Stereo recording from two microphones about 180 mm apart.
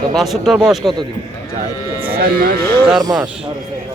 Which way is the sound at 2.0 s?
55° right (ahead or behind).